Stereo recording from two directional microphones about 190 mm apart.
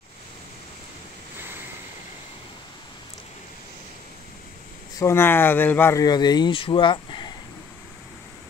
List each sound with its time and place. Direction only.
4.9 s speech: 15° left (ahead or behind)